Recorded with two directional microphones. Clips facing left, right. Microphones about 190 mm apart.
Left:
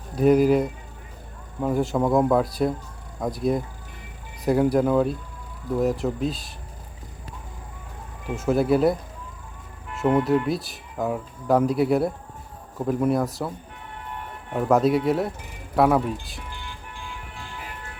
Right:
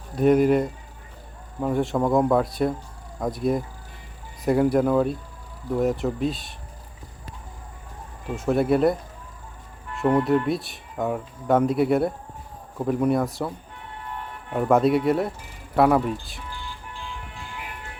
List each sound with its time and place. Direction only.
0.2 s speech: centre (ahead or behind)
8.4 s speech: centre (ahead or behind)
9.9 s music: centre (ahead or behind)
10.2 s speech: centre (ahead or behind)
14.5 s speech: centre (ahead or behind)
16.5 s vehicle: 15° left (ahead or behind)